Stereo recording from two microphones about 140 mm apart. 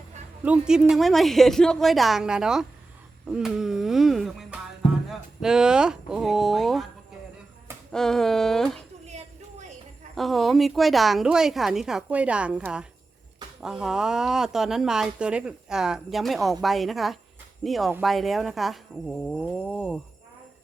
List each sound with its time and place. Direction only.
0.4 s speech: 10° right (ahead or behind)
7.9 s a sound: 5° left (ahead or behind)
10.2 s speech: centre (ahead or behind)